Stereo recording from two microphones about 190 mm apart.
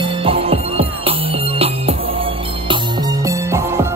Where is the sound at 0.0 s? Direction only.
30° right (ahead or behind).